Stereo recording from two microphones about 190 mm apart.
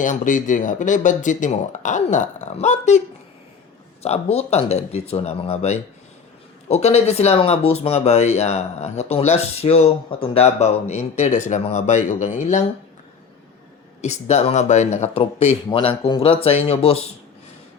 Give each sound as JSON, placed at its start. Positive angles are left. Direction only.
{"t": 0.0, "sound": "speech", "side_deg": 45}
{"t": 4.0, "sound": "speech", "side_deg": 35}
{"t": 14.0, "sound": "speech", "side_deg": 35}